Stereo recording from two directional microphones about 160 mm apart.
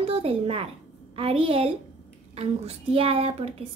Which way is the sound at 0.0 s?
35° right (ahead or behind).